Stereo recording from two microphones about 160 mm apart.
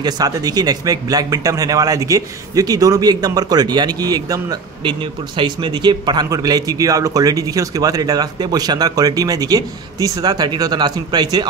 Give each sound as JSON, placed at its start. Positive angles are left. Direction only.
{"t": 0.0, "sound": "a man's voice", "side_deg": -25}